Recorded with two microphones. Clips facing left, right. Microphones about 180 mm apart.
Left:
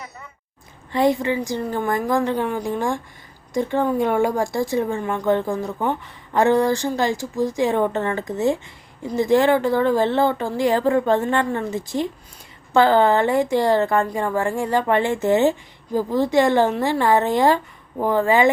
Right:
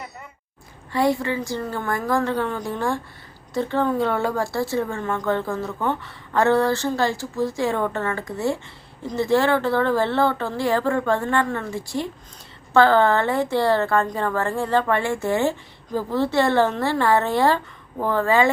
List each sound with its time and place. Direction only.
0.9 s speech: 20° left (ahead or behind)